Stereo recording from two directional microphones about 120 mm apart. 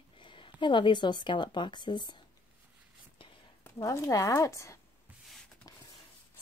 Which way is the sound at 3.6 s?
25° left (ahead or behind).